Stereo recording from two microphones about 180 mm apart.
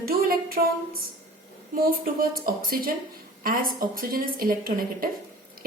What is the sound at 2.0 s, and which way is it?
A woman's voice, 55° right (ahead or behind).